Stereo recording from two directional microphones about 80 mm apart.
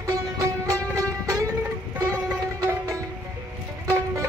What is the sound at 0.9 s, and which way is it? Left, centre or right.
Music, right.